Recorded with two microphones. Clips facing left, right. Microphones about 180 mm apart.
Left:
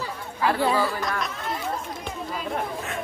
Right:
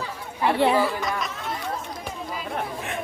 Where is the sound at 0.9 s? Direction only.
Centre (ahead or behind).